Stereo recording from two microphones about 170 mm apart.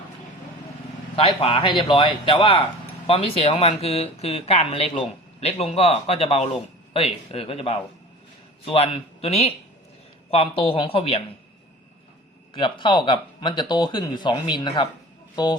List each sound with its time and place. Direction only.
1.1 s speech: 35° left (ahead or behind)
12.5 s speech: 30° left (ahead or behind)